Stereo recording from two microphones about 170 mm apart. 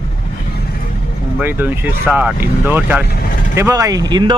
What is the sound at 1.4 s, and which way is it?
Speech, 10° right (ahead or behind).